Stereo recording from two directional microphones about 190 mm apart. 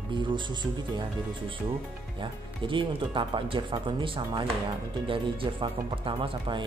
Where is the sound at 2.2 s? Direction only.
25° right (ahead or behind).